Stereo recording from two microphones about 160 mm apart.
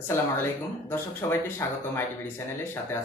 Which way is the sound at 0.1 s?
15° left (ahead or behind).